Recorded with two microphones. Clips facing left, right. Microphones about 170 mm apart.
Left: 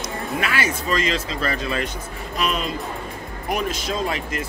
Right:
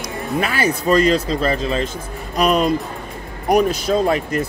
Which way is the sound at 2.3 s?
40° right (ahead or behind).